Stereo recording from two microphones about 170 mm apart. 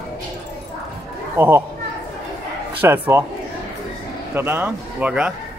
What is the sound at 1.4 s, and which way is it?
Speech, 15° right (ahead or behind).